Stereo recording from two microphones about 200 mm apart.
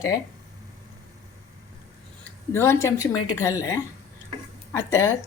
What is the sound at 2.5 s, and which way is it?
A woman's voice, 15° left (ahead or behind).